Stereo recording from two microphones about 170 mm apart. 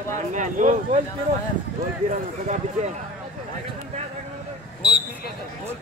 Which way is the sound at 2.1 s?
45° right (ahead or behind).